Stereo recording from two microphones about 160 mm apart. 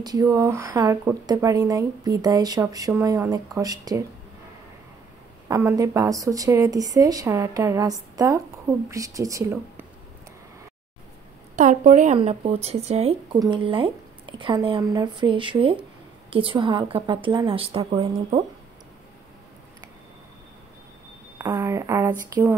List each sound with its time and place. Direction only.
0.0 s speech: 20° right (ahead or behind)
5.5 s speech: 20° right (ahead or behind)
11.5 s a woman's voice: 50° right (ahead or behind)
21.4 s speech: 20° right (ahead or behind)